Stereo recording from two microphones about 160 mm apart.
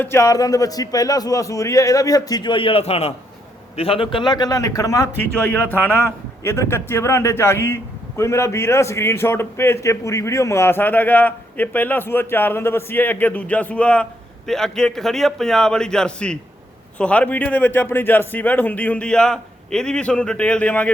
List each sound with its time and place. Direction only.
0.0 s a man's voice: 15° left (ahead or behind)
6.4 s a man's voice: 15° left (ahead or behind)